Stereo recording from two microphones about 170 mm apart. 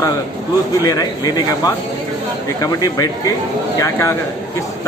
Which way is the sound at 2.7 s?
20° left (ahead or behind).